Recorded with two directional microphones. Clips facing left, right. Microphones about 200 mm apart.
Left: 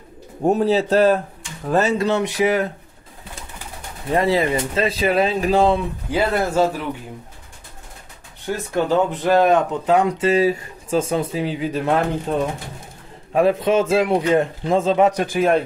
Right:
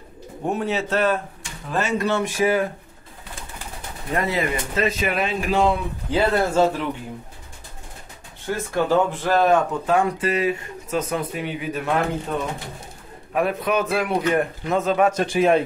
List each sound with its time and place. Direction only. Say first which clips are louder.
0.4 s speech: left 7 dB; 40° left (ahead or behind)
2.3 s speech: left 1 dB; 20° left (ahead or behind)
4.1 s speech: left 5 dB; 30° left (ahead or behind)
6.0 s speech: right 1 dB; 10° left (ahead or behind)
8.7 s speech: left 1 dB; 20° left (ahead or behind)
15.3 s a man's voice: right 2 dB; centre (ahead or behind)